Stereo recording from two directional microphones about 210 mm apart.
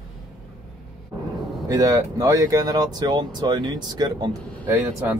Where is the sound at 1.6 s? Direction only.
15° right (ahead or behind).